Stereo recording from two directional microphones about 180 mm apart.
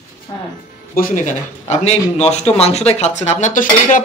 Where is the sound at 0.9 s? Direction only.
45° left (ahead or behind).